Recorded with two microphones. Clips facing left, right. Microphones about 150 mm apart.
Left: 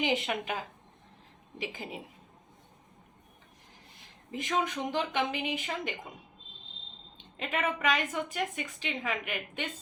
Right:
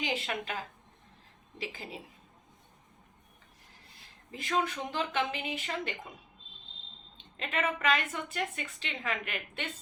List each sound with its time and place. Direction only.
0.0 s a woman's voice: 20° left (ahead or behind)
4.3 s a woman's voice: 20° left (ahead or behind)
7.3 s a woman's voice: 10° left (ahead or behind)